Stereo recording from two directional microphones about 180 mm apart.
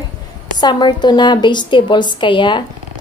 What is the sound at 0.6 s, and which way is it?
A woman's voice, 25° left (ahead or behind).